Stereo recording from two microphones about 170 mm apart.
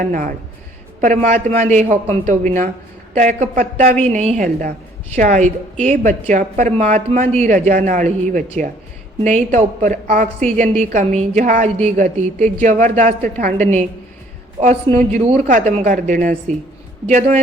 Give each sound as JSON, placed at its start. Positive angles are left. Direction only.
{"t": 0.0, "sound": "a woman's voice", "side_deg": -50}
{"t": 14.9, "sound": "speech", "side_deg": -45}
{"t": 17.1, "sound": "speech", "side_deg": -40}